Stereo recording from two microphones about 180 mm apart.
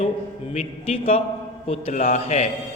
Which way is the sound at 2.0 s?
50° left (ahead or behind).